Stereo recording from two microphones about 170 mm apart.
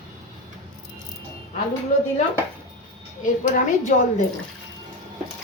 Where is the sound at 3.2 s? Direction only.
50° left (ahead or behind).